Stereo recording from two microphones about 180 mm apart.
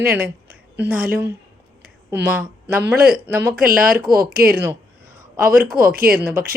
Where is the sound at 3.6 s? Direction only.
50° right (ahead or behind).